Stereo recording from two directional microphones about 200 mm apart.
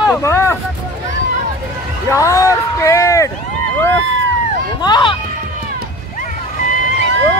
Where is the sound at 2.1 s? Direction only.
15° left (ahead or behind).